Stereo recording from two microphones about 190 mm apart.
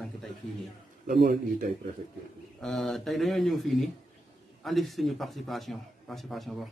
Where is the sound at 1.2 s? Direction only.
50° right (ahead or behind).